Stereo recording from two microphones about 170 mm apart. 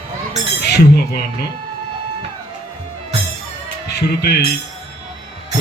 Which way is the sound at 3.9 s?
75° left (ahead or behind).